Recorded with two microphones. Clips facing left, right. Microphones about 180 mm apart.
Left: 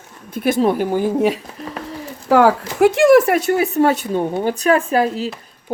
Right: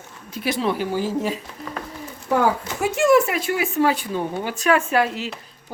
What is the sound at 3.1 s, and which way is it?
Speech, 50° left (ahead or behind).